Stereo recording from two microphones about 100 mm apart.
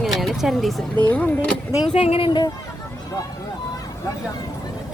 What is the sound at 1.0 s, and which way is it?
Speech, 15° left (ahead or behind).